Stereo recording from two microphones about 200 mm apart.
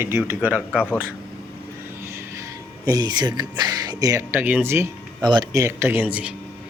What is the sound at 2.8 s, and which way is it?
Speech, 20° right (ahead or behind).